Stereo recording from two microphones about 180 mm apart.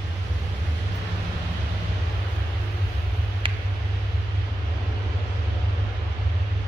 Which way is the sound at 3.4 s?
30° right (ahead or behind).